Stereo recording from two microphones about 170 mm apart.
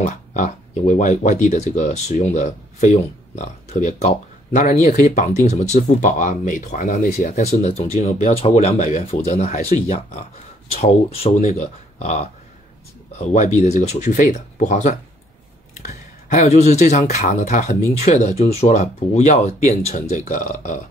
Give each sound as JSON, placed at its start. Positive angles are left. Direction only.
{"t": 0.0, "sound": "speech", "side_deg": 45}